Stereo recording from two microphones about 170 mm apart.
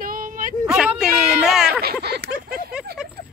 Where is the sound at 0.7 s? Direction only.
5° right (ahead or behind).